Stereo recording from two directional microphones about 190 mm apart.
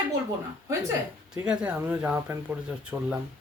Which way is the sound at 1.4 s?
5° right (ahead or behind).